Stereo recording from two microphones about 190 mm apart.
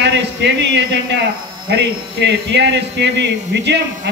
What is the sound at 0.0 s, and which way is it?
Speech, 65° right (ahead or behind).